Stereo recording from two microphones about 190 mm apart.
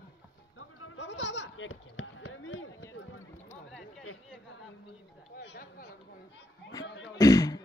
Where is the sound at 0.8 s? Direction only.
75° left (ahead or behind); by 2.6 s 90° left.